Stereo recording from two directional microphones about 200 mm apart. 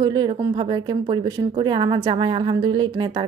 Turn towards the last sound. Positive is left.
turn(degrees=-25)  # may be behind; listen again after turning